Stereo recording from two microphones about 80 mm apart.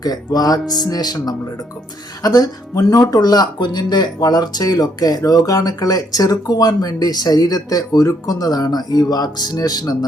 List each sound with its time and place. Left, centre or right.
0.0 s speech: left